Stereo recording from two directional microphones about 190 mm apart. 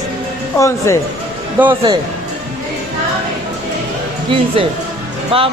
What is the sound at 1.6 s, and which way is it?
Speech, 10° right (ahead or behind).